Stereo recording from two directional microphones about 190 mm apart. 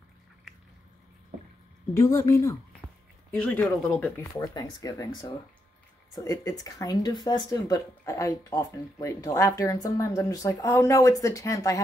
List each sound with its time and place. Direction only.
2.0 s speech: 15° left (ahead or behind)